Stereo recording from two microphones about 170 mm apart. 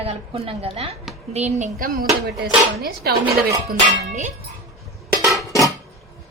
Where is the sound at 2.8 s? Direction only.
70° right (ahead or behind).